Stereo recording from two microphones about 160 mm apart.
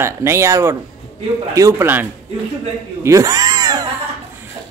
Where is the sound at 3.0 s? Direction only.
20° right (ahead or behind).